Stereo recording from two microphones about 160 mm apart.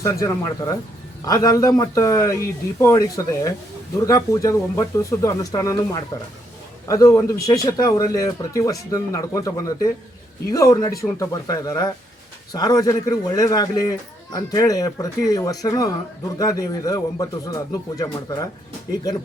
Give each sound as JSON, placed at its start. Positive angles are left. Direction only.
{"t": 0.0, "sound": "a man's voice", "side_deg": 20}